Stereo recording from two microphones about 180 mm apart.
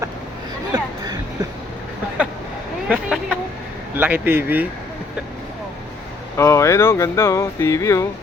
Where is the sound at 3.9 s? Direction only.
10° right (ahead or behind).